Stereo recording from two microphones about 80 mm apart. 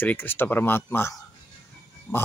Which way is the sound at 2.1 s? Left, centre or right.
Centre.